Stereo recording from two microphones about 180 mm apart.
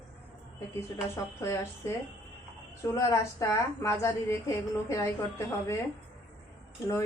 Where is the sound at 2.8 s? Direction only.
15° left (ahead or behind).